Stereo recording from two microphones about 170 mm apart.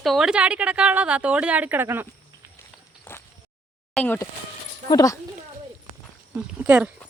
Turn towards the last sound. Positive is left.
turn(degrees=-10)  # may be behind; listen again after turning